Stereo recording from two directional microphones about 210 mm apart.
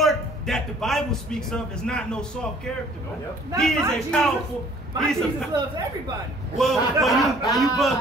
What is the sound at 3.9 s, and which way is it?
A man's voice, 5° left (ahead or behind).